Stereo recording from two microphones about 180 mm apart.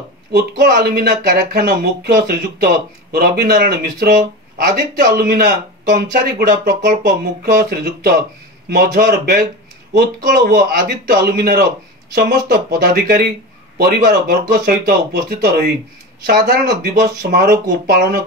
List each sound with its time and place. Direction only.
0.3 s speech: 65° right (ahead or behind)
6.1 s speech: 45° right (ahead or behind)
7.0 s speech: 65° right (ahead or behind)
12.7 s speech: 60° right (ahead or behind)